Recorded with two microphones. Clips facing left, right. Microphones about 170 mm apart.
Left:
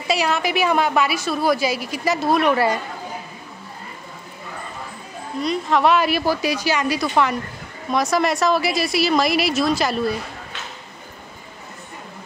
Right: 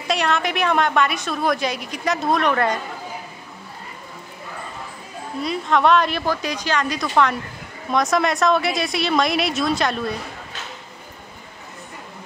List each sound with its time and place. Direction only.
0.1 s a woman's voice: 5° left (ahead or behind)
5.4 s a woman's voice: centre (ahead or behind)